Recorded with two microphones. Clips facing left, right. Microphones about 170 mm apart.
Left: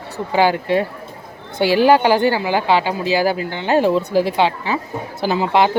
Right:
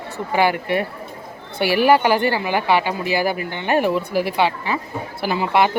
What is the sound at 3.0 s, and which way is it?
Speech, 90° left.